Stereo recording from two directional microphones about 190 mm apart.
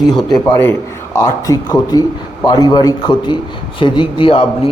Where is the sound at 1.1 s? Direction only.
15° left (ahead or behind).